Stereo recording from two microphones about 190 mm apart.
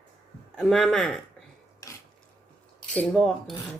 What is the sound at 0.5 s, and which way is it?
Speech, centre (ahead or behind).